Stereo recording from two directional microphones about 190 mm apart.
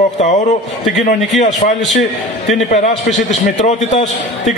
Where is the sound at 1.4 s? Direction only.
40° left (ahead or behind).